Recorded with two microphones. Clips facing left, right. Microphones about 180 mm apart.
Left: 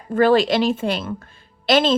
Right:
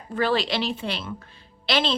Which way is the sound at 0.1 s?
50° left (ahead or behind).